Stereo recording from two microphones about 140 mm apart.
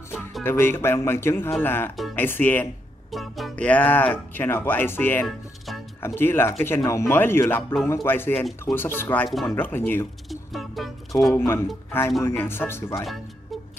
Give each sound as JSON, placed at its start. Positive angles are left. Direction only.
{"t": 0.4, "sound": "speech", "side_deg": 15}
{"t": 3.1, "sound": "speech", "side_deg": 0}
{"t": 10.3, "sound": "a sound", "side_deg": 0}
{"t": 11.3, "sound": "speech", "side_deg": 15}